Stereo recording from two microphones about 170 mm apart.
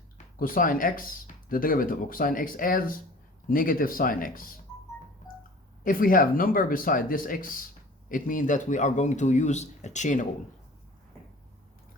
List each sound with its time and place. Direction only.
0.3 s speech: 55° left (ahead or behind)
5.8 s speech: 55° left (ahead or behind)